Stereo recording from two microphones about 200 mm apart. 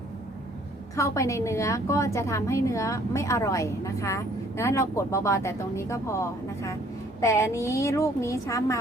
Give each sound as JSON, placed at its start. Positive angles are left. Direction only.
{"t": 0.9, "sound": "a woman's voice", "side_deg": 15}